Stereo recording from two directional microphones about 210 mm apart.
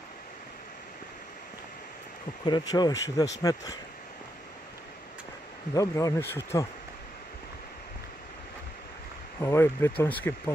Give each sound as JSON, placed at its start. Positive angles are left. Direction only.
{"t": 2.4, "sound": "speech", "side_deg": 20}
{"t": 5.8, "sound": "speech", "side_deg": 15}
{"t": 9.4, "sound": "speech", "side_deg": 10}